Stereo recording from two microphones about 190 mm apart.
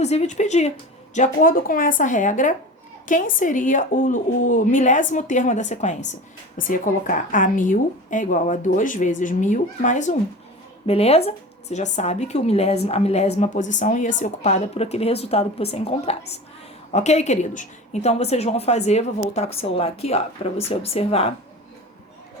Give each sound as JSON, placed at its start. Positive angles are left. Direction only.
{"t": 0.0, "sound": "a woman's voice", "side_deg": 35}